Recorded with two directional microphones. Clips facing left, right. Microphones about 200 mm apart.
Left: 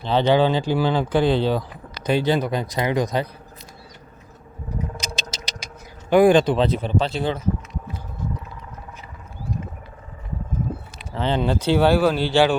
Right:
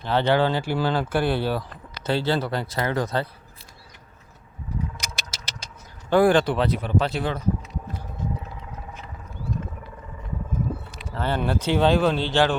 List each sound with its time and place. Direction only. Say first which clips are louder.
0.0 s speech: left 3 dB; 15° left (ahead or behind)
4.9 s vehicle: left 6 dB; 20° left (ahead or behind)
7.0 s speech: left 2 dB; 25° left (ahead or behind)
11.2 s speech: left 3 dB; 15° left (ahead or behind)